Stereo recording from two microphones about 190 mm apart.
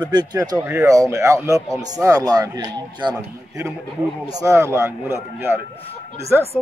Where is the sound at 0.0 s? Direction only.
25° right (ahead or behind).